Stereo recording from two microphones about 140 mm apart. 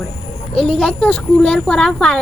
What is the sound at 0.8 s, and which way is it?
A woman's voice, 5° left (ahead or behind).